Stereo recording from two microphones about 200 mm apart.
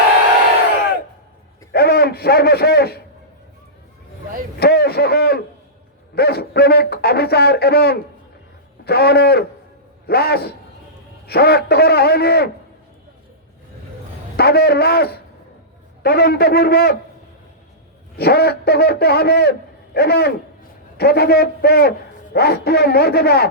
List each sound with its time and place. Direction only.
1.7 s a man's voice: 50° left (ahead or behind)
4.6 s a man's voice: 50° left (ahead or behind)
14.3 s a man's voice: 50° left (ahead or behind)
18.2 s a man's voice: 50° left (ahead or behind)